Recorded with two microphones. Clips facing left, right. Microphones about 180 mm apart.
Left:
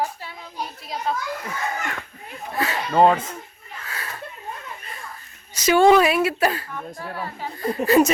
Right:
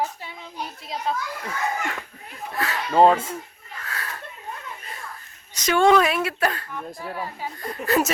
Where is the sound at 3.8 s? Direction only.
Centre (ahead or behind).